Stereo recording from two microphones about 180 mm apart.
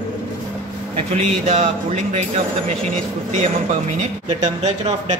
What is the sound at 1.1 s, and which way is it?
A man's voice, 40° right (ahead or behind).